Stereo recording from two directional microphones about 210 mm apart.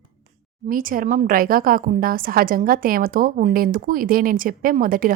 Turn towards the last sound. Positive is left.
turn(degrees=-40)  # may be behind; listen again after turning